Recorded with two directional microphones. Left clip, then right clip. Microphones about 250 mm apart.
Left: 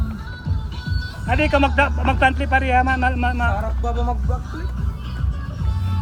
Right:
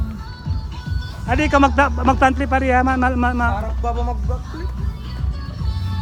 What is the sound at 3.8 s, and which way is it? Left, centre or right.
Speech, right.